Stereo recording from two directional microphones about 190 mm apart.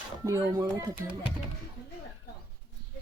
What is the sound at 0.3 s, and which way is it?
Speech, 15° right (ahead or behind).